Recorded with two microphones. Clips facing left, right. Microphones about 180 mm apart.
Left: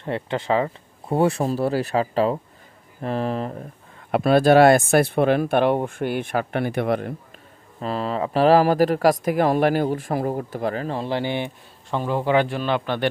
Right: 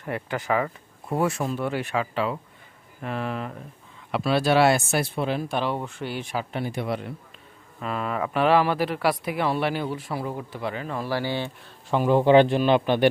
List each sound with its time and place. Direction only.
0.0 s speech: 25° left (ahead or behind)
4.1 s speech: 50° left (ahead or behind)
7.8 s speech: 30° left (ahead or behind)
11.0 s speech: 20° left (ahead or behind)
11.9 s a man's voice: 15° right (ahead or behind)